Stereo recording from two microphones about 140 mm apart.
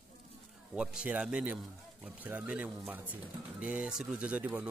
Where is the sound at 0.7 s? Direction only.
5° right (ahead or behind).